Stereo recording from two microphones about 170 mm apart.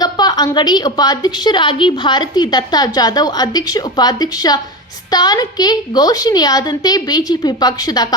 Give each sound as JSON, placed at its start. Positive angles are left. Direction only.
{"t": 0.0, "sound": "a woman's voice", "side_deg": 25}